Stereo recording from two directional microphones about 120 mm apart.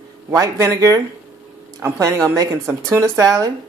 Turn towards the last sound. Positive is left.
turn(degrees=-30)  # may be behind; listen again after turning